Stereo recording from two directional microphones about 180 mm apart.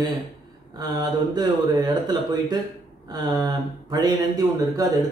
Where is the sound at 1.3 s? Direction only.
25° right (ahead or behind).